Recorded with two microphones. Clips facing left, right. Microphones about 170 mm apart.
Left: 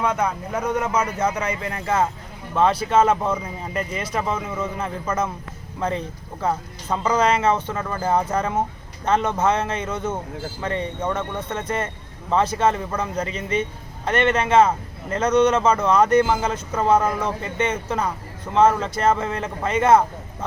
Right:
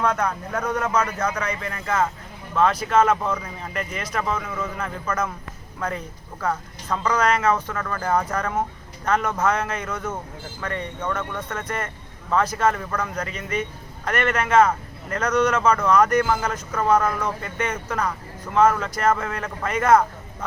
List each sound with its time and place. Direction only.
0.0 s a man's voice: 10° left (ahead or behind); by 3.3 s 30° left (ahead or behind)
3.3 s speech: 15° left (ahead or behind)
3.8 s a man's voice: 30° left (ahead or behind)